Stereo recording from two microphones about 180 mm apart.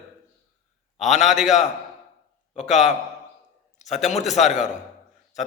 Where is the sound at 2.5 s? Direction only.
40° left (ahead or behind).